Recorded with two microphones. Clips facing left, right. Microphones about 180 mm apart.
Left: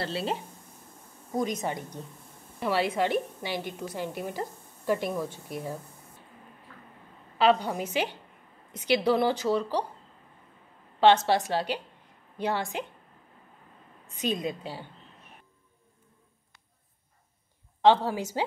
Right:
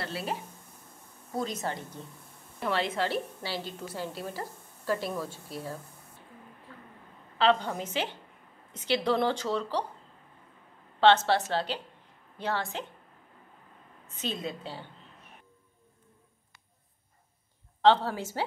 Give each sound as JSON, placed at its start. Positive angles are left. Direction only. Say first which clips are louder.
{"t": 0.0, "sound": "speech", "louder": "left 4 dB", "side_deg": 25}
{"t": 1.3, "sound": "a woman's voice", "louder": "left 3 dB", "side_deg": 15}
{"t": 7.3, "sound": "a woman's voice", "louder": "left 2 dB", "side_deg": 10}
{"t": 11.0, "sound": "a woman's voice", "louder": "left 1 dB", "side_deg": 15}
{"t": 14.0, "sound": "a woman's voice", "louder": "left 5 dB", "side_deg": 15}
{"t": 17.8, "sound": "a woman's voice", "louder": "left 2 dB", "side_deg": 15}